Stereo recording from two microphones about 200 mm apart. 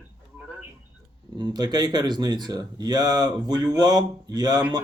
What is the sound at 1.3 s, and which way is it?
Speech, 20° right (ahead or behind).